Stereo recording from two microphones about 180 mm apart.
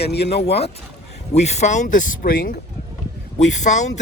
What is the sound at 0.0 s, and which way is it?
Speech, 65° left (ahead or behind).